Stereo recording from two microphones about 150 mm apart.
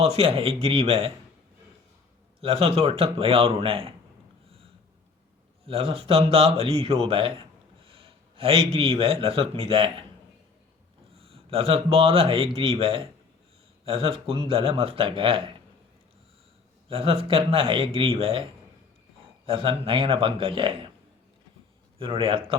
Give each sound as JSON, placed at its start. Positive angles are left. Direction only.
{"t": 0.0, "sound": "speech", "side_deg": -40}
{"t": 2.4, "sound": "speech", "side_deg": -40}
{"t": 5.6, "sound": "a man's voice", "side_deg": -40}
{"t": 11.1, "sound": "a man's voice", "side_deg": -40}
{"t": 16.9, "sound": "speech", "side_deg": -40}
{"t": 19.5, "sound": "speech", "side_deg": -35}
{"t": 21.9, "sound": "speech", "side_deg": -40}